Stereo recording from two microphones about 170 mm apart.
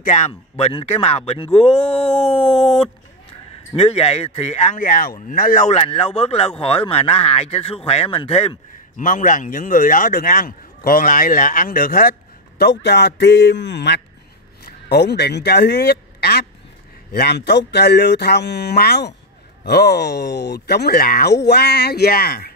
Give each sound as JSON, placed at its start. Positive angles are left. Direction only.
{"t": 0.0, "sound": "speech", "side_deg": 45}
{"t": 0.3, "sound": "speech", "side_deg": 30}
{"t": 9.0, "sound": "a man's voice", "side_deg": 50}
{"t": 14.6, "sound": "speech", "side_deg": 75}